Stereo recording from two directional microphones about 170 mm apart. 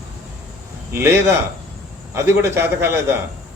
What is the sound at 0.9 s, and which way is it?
Speech, 15° right (ahead or behind).